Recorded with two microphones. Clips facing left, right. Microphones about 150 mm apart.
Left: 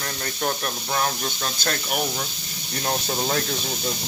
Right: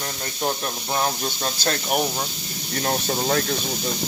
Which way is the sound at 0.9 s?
30° right (ahead or behind).